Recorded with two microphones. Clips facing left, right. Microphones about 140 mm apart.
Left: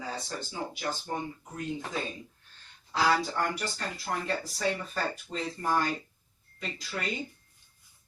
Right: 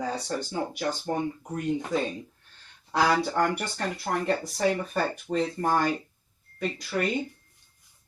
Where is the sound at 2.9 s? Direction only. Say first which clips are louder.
Right 3 dB; 60° right (ahead or behind).